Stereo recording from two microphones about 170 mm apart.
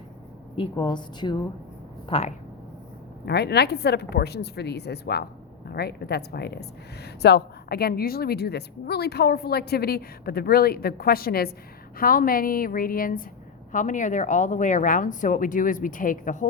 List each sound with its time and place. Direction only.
0.5 s a woman's voice: 30° left (ahead or behind)
2.0 s speech: 35° left (ahead or behind)
3.2 s a woman's voice: 75° left (ahead or behind); by 16.5 s 50° left (ahead or behind)